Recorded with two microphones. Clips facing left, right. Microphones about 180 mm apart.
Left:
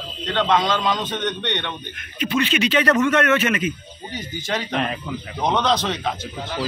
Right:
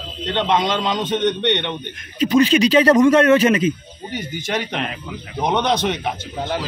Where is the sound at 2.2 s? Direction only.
35° right (ahead or behind).